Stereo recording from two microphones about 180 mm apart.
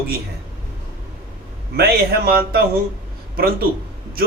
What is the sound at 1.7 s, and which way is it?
Speech, 60° right (ahead or behind).